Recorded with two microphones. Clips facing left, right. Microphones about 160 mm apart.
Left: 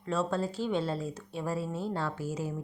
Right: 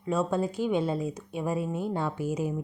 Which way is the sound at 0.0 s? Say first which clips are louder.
Right 3 dB; 15° right (ahead or behind).